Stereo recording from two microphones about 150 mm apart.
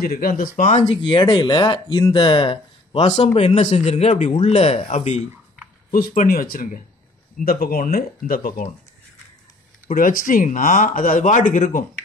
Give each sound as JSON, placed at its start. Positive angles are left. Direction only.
{"t": 0.0, "sound": "speech", "side_deg": 85}
{"t": 1.0, "sound": "speech", "side_deg": 30}
{"t": 5.9, "sound": "speech", "side_deg": 70}
{"t": 7.3, "sound": "speech", "side_deg": 90}
{"t": 9.9, "sound": "a man's voice", "side_deg": 65}